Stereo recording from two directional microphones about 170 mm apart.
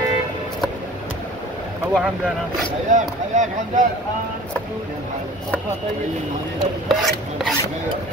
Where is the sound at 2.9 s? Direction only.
50° right (ahead or behind).